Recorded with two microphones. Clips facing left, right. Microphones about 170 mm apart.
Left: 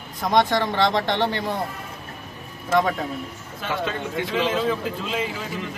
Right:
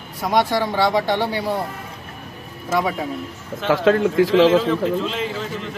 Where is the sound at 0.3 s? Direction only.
10° right (ahead or behind).